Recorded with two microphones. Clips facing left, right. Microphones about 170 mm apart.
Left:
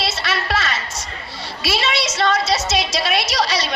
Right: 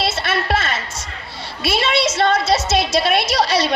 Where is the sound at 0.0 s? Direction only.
55° right (ahead or behind).